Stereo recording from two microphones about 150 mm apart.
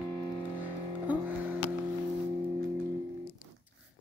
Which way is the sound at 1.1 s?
10° right (ahead or behind).